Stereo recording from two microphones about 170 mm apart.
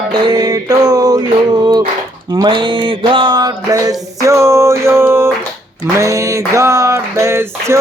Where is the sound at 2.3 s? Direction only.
25° right (ahead or behind).